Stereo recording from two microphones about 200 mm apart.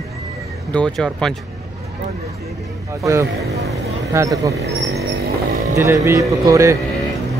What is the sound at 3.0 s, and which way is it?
Speech, 15° right (ahead or behind).